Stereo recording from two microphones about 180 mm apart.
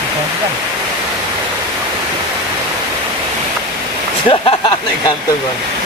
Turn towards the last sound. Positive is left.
turn(degrees=30)  # may be behind; listen again after turning